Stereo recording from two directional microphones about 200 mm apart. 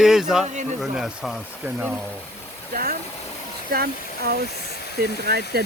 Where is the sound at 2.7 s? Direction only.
45° right (ahead or behind).